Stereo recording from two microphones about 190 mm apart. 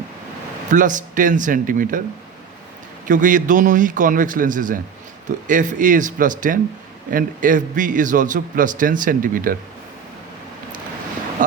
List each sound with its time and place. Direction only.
0.7 s a man's voice: 45° right (ahead or behind)
3.1 s a man's voice: 45° right (ahead or behind)